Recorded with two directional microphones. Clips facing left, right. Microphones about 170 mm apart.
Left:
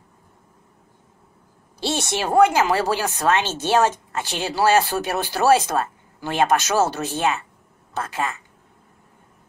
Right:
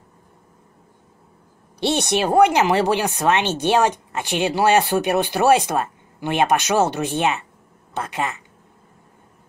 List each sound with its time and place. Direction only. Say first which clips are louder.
1.8 s speech: right 4 dB; 20° right (ahead or behind)